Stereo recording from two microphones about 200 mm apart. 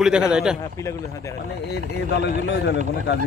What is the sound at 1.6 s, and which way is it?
Speech, 55° left (ahead or behind).